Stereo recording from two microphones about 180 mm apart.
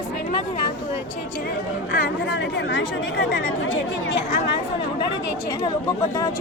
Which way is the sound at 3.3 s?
90° left.